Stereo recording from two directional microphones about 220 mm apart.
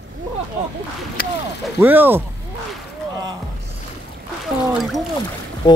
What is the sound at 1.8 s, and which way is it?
Speech, 10° right (ahead or behind).